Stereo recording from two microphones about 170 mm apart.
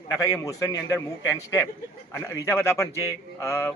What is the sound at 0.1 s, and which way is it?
A man's voice, 20° left (ahead or behind).